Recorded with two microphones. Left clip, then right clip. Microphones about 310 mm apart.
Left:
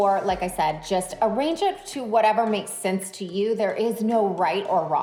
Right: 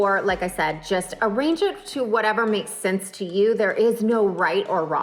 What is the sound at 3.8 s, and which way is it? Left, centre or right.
Speech, left.